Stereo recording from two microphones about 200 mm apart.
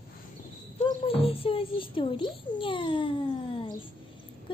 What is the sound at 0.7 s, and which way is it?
A woman's voice, 30° left (ahead or behind).